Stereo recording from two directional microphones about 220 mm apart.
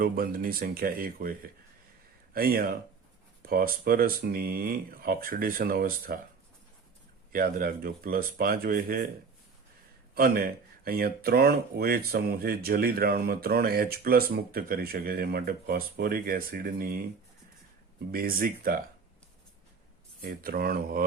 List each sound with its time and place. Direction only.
0.0 s speech: 40° right (ahead or behind)
7.3 s speech: 40° right (ahead or behind)
10.2 s speech: 45° right (ahead or behind)
18.1 s speech: 40° right (ahead or behind)
20.2 s speech: 40° right (ahead or behind)